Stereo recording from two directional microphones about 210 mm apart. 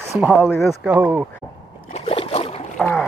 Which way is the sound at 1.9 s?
30° left (ahead or behind).